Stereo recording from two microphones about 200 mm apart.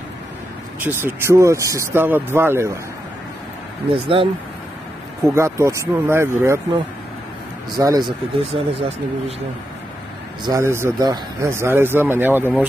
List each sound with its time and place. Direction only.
0.7 s speech: 10° right (ahead or behind)
3.9 s speech: 25° right (ahead or behind)
5.2 s speech: 15° right (ahead or behind)
7.7 s speech: 20° right (ahead or behind)
10.4 s speech: 15° right (ahead or behind)